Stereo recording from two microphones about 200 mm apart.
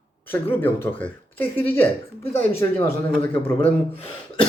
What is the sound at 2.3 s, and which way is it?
Speech, 30° left (ahead or behind).